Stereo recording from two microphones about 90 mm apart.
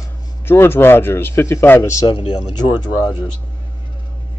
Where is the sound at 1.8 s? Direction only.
40° left (ahead or behind).